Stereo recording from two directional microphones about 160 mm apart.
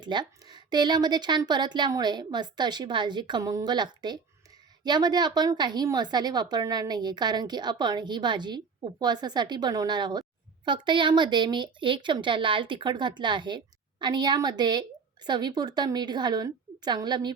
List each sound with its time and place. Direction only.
0.0 s a woman's voice: 25° right (ahead or behind)